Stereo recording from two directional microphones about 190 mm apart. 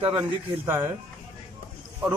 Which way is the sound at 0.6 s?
15° right (ahead or behind).